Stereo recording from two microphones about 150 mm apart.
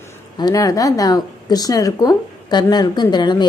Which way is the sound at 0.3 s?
25° left (ahead or behind).